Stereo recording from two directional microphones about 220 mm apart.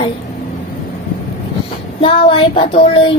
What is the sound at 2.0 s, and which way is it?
Child singing, 25° left (ahead or behind).